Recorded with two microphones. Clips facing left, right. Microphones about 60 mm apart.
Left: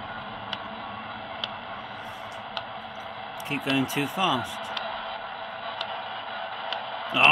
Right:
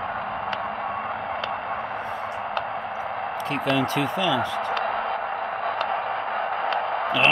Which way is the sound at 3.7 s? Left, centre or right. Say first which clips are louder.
Right 3 dB; centre.